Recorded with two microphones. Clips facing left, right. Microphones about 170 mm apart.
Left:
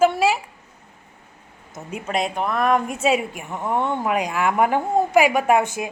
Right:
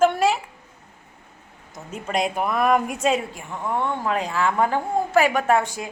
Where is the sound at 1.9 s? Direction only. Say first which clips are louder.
Even; centre (ahead or behind).